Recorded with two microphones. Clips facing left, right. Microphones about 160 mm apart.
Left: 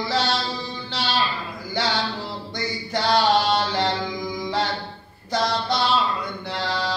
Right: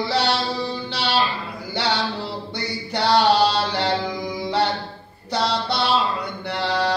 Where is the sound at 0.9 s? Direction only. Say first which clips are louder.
Right 1 dB; 65° right (ahead or behind).